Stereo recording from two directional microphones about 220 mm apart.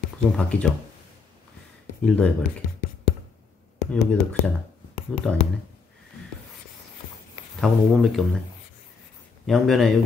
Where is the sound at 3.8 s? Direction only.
45° left (ahead or behind).